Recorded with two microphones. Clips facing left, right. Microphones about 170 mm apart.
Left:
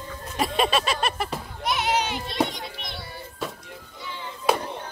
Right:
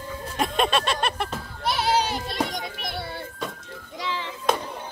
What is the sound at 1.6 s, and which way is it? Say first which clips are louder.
Children playing: right 2 dB; 30° right (ahead or behind).